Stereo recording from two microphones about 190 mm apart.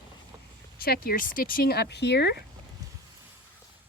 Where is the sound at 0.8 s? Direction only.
50° left (ahead or behind).